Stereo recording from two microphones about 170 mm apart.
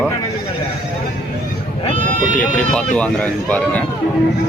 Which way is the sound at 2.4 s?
5° left (ahead or behind).